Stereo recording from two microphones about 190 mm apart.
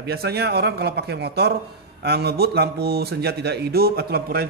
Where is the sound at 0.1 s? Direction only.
55° right (ahead or behind).